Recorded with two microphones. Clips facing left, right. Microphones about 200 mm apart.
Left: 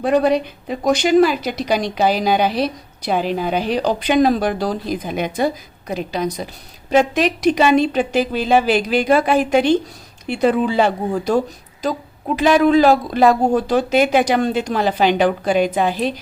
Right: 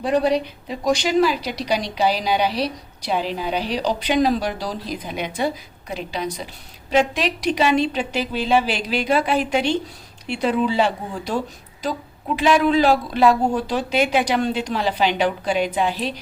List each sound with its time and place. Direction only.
0.0 s a woman's voice: 50° left (ahead or behind)
12.4 s a woman's voice: 45° left (ahead or behind)